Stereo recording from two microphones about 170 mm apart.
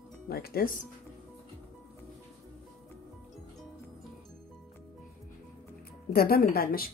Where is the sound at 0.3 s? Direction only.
65° left (ahead or behind).